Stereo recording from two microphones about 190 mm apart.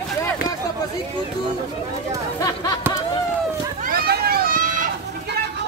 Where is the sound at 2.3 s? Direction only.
20° left (ahead or behind).